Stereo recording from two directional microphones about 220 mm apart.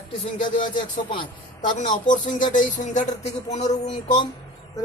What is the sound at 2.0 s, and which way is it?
Speech, 35° left (ahead or behind).